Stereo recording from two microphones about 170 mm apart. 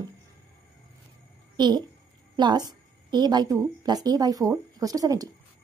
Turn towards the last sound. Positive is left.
turn(degrees=-20)  # may be behind; listen again after turning